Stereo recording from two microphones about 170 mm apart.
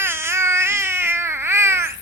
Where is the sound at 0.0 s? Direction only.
15° right (ahead or behind).